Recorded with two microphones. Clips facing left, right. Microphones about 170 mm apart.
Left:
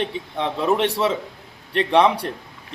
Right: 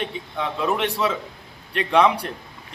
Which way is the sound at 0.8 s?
30° left (ahead or behind).